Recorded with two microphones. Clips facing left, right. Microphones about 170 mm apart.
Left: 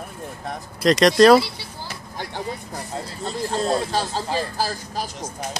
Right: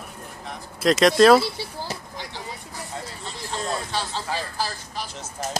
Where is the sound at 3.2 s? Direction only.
35° left (ahead or behind).